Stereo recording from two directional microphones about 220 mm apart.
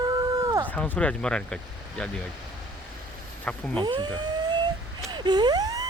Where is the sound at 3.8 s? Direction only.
20° right (ahead or behind).